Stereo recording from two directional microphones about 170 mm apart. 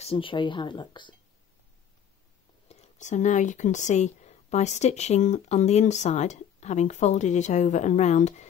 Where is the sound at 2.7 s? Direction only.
45° left (ahead or behind).